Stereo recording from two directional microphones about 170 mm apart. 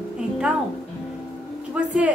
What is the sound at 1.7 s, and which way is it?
Speech, 5° right (ahead or behind).